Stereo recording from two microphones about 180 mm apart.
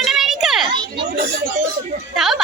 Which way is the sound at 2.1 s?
Centre (ahead or behind).